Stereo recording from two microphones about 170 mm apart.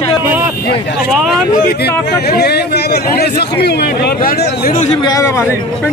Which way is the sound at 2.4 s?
75° left (ahead or behind).